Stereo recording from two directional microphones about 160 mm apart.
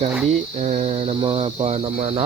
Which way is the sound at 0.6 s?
40° right (ahead or behind).